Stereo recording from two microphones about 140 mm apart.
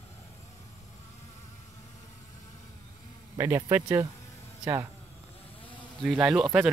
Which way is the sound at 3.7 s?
20° right (ahead or behind).